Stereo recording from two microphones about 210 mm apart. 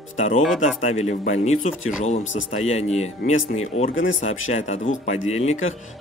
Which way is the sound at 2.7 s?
30° left (ahead or behind).